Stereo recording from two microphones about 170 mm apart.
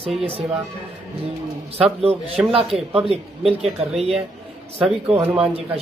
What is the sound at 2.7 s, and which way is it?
Speech, 5° right (ahead or behind).